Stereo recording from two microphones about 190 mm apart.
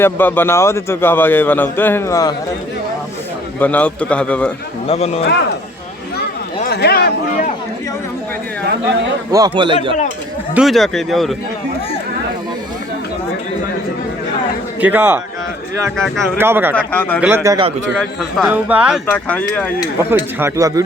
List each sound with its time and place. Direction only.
0.0 s a man's voice: 10° left (ahead or behind)
3.6 s a man's voice: 10° left (ahead or behind)
4.9 s speech: 35° left (ahead or behind)
6.7 s a sound: 60° left (ahead or behind)
9.3 s a man's voice: 20° right (ahead or behind)
10.5 s speech: centre (ahead or behind)
14.8 s speech: 10° right (ahead or behind)
16.0 s speech: 5° left (ahead or behind)
16.4 s speech: 10° right (ahead or behind)
16.7 s a man's voice: 10° left (ahead or behind)
17.2 s speech: 10° right (ahead or behind)
18.0 s speech: centre (ahead or behind)
19.0 s a man's voice: 10° left (ahead or behind)
20.0 s speech: 10° right (ahead or behind)